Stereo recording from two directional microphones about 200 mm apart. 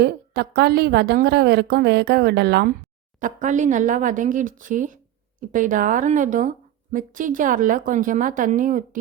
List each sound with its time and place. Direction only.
0.0 s a woman's voice: 55° right (ahead or behind)
3.2 s speech: 40° right (ahead or behind)